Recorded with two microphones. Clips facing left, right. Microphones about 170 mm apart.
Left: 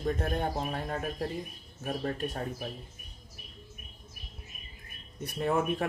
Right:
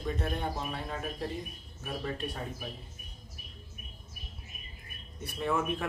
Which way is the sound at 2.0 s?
45° left (ahead or behind).